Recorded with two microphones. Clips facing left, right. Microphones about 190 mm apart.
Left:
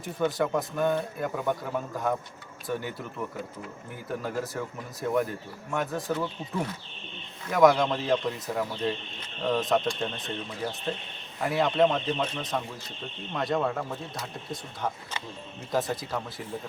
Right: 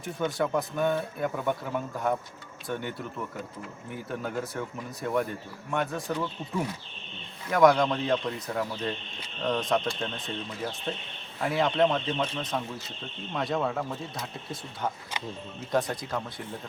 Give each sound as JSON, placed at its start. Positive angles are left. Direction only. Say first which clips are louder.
{"t": 0.0, "sound": "speech", "louder": "left 2 dB", "side_deg": 0}
{"t": 2.6, "sound": "speech", "louder": "left 1 dB", "side_deg": 5}
{"t": 4.1, "sound": "speech", "louder": "left 2 dB", "side_deg": 0}
{"t": 7.5, "sound": "speech", "louder": "even", "side_deg": 0}